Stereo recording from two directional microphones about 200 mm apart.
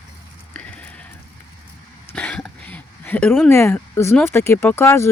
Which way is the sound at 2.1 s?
5° left (ahead or behind).